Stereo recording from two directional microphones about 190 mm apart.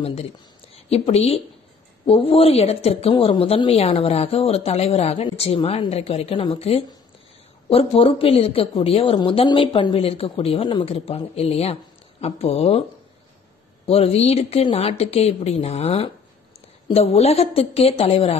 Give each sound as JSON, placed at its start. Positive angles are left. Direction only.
{"t": 0.0, "sound": "a woman's voice", "side_deg": 30}
{"t": 13.8, "sound": "a woman's voice", "side_deg": 30}